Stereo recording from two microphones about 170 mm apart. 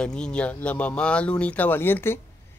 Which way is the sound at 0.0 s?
5° left (ahead or behind).